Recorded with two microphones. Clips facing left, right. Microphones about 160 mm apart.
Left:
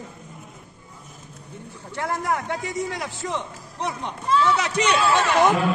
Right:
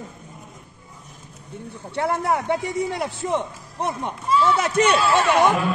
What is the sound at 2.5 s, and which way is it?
Speech, 60° right (ahead or behind).